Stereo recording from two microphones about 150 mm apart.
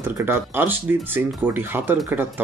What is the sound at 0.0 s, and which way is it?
Speech, 15° right (ahead or behind).